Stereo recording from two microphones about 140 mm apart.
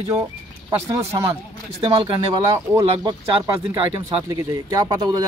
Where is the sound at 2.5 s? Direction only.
25° right (ahead or behind).